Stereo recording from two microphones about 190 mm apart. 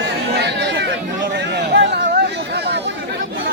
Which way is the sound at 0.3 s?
65° right (ahead or behind).